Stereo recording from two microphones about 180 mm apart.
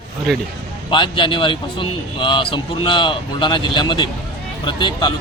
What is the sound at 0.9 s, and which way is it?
Speech, 25° left (ahead or behind).